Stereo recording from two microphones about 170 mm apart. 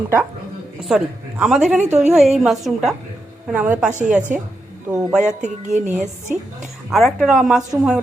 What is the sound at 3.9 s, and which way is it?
Music, 45° right (ahead or behind).